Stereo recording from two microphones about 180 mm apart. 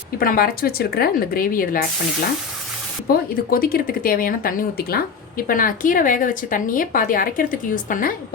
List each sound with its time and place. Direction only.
0.2 s speech: 55° left (ahead or behind)
3.1 s speech: 50° left (ahead or behind)